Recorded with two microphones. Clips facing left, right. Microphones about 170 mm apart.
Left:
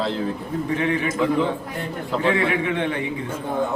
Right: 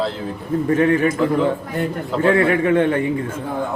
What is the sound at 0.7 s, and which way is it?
Speech, 45° right (ahead or behind).